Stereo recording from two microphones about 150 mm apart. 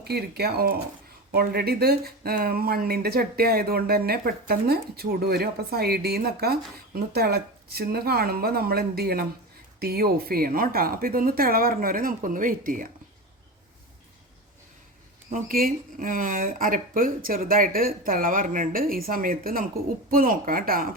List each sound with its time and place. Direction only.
0.0 s speech: 90° right; by 12.9 s 65° right (ahead or behind)
15.3 s speech: 70° right (ahead or behind)